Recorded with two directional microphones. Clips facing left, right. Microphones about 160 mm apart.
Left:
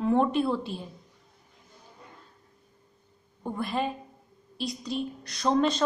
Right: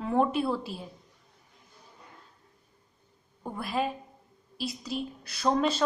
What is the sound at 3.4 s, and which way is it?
A woman's voice, centre (ahead or behind).